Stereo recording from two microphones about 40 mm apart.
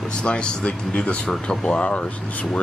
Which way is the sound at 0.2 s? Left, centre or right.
Left.